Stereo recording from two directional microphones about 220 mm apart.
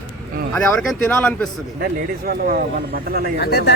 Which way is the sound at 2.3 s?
40° right (ahead or behind).